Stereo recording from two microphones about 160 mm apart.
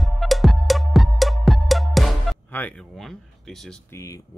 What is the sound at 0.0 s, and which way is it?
Music, centre (ahead or behind).